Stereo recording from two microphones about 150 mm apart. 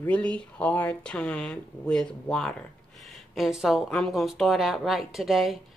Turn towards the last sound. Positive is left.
turn(degrees=0)  # may be behind; listen again after turning